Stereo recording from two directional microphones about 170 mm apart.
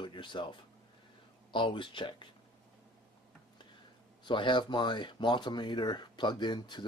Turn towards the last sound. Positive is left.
turn(degrees=25)  # may be behind; listen again after turning